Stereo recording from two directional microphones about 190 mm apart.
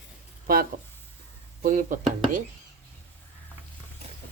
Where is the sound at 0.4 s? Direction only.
50° right (ahead or behind).